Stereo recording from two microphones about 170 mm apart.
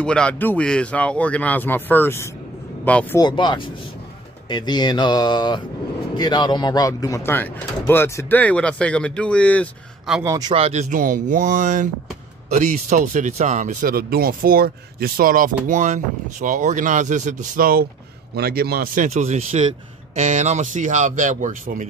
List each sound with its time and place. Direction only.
0.0 s speech: 5° left (ahead or behind)
3.2 s speech: 25° left (ahead or behind); by 9.7 s 5° left (ahead or behind)
10.2 s speech: 20° right (ahead or behind)
10.5 s a man's voice: 40° right (ahead or behind); by 19.0 s 60° right (ahead or behind)
19.0 s speech: 40° right (ahead or behind)